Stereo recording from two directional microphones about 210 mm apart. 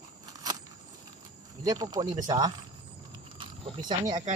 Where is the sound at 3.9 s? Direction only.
20° right (ahead or behind).